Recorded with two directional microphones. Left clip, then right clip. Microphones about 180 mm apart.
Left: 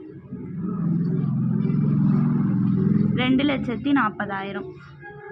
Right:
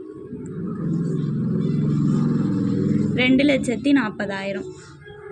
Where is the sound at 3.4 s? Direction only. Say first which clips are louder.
Right 5 dB; 20° right (ahead or behind).